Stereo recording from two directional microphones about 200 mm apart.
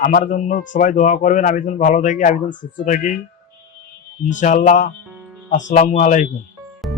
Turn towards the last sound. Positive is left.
turn(degrees=35)  # may be behind; listen again after turning